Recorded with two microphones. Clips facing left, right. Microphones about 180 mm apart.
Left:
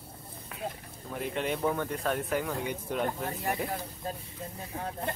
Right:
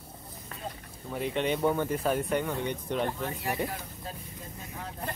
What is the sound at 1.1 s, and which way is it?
Speech, centre (ahead or behind).